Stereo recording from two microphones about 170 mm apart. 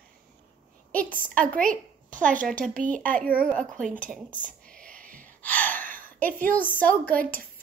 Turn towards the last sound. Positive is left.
turn(degrees=10)  # may be behind; listen again after turning